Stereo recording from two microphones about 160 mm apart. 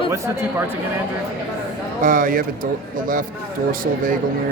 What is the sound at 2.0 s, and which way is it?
Speech, 60° right (ahead or behind).